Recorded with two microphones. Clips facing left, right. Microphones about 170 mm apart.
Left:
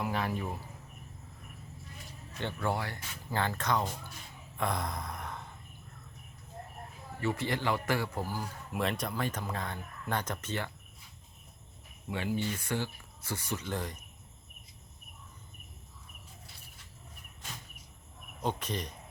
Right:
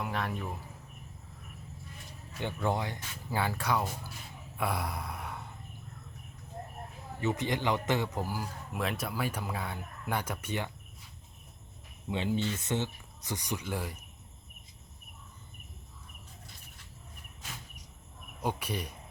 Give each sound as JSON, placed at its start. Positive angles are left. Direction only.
{"t": 0.0, "sound": "speech", "side_deg": 0}
{"t": 2.4, "sound": "speech", "side_deg": -15}
{"t": 4.5, "sound": "a sound", "side_deg": -10}
{"t": 7.2, "sound": "a man's voice", "side_deg": -20}
{"t": 8.7, "sound": "speech", "side_deg": 0}
{"t": 12.0, "sound": "a man's voice", "side_deg": -20}
{"t": 18.4, "sound": "speech", "side_deg": -10}